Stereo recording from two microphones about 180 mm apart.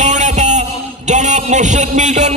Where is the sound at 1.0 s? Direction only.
40° right (ahead or behind).